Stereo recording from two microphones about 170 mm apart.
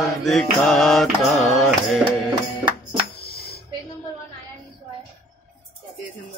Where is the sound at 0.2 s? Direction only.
Centre (ahead or behind).